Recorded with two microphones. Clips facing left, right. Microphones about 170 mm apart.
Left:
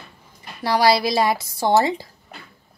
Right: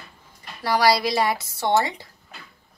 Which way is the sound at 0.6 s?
25° left (ahead or behind).